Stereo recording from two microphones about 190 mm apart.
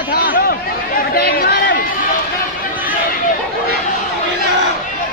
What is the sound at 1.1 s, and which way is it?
Chatter, 55° left (ahead or behind).